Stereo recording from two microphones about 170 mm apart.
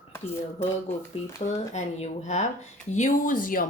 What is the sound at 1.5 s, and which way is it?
A woman's voice, 40° left (ahead or behind).